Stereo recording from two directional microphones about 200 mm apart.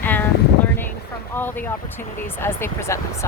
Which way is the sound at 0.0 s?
10° left (ahead or behind).